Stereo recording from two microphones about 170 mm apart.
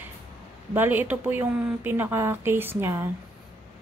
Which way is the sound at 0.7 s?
10° right (ahead or behind).